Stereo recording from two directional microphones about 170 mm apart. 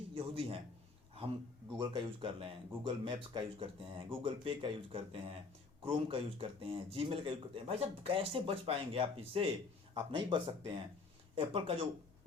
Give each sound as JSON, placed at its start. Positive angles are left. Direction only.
{"t": 0.1, "sound": "a man's voice", "side_deg": -35}
{"t": 1.8, "sound": "speech", "side_deg": -30}